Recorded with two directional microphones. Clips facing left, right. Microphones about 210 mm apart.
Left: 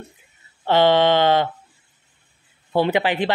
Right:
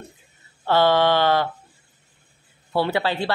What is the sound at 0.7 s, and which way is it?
Speech, 20° left (ahead or behind).